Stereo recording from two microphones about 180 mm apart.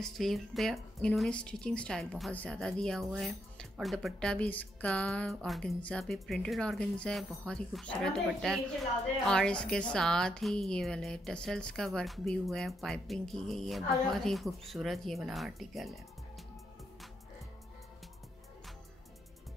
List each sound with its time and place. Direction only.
0.0 s speech: centre (ahead or behind)